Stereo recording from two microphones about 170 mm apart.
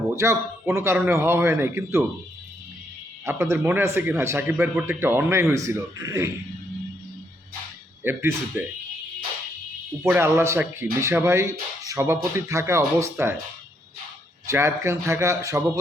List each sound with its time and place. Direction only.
0.2 s speech: 15° right (ahead or behind)
3.2 s speech: 15° right (ahead or behind)
8.0 s speech: 15° right (ahead or behind)
10.1 s speech: 15° right (ahead or behind)
14.5 s speech: 15° right (ahead or behind)